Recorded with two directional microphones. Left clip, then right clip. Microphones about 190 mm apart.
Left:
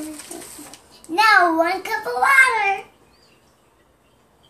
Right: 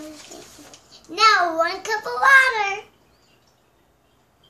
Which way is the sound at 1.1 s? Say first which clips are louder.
Left 2 dB; 15° right (ahead or behind).